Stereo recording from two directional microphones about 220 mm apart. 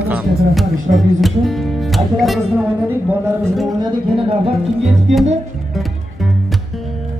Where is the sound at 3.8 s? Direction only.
20° right (ahead or behind).